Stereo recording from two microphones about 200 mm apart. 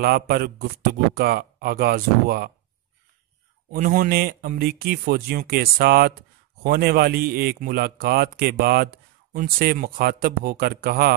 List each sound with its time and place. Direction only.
0.0 s a man's voice: 50° right (ahead or behind)
3.7 s a man's voice: 40° right (ahead or behind)